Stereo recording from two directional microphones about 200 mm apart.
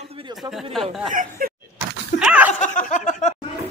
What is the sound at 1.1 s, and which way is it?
Speech, 45° right (ahead or behind).